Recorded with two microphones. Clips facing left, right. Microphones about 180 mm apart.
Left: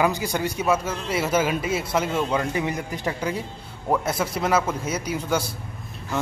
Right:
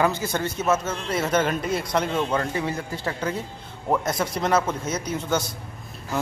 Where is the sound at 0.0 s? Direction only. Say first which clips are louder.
Even; 15° left (ahead or behind).